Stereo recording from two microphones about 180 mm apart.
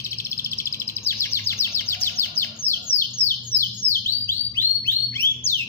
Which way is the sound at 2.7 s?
40° left (ahead or behind).